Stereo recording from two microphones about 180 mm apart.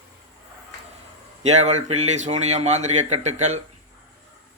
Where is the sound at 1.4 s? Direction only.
40° right (ahead or behind).